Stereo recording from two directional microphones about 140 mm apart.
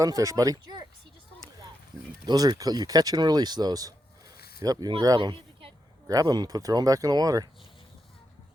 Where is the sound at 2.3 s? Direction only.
30° right (ahead or behind).